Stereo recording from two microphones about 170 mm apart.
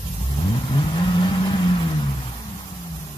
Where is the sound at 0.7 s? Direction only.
30° left (ahead or behind).